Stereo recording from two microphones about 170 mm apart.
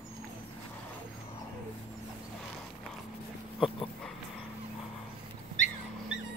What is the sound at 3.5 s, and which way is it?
Dog, 30° left (ahead or behind).